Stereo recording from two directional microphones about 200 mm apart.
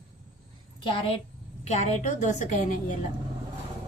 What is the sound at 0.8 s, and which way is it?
A woman's voice, 25° left (ahead or behind).